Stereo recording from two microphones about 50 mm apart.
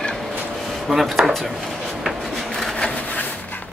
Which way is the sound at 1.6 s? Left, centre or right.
Centre.